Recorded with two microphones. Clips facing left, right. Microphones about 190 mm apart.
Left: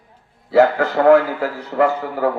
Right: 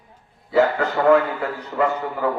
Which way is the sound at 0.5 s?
75° left (ahead or behind).